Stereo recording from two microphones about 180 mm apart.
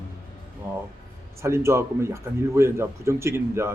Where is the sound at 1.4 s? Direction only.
15° right (ahead or behind).